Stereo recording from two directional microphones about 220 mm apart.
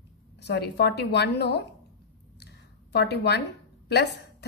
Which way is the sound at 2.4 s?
50° left (ahead or behind).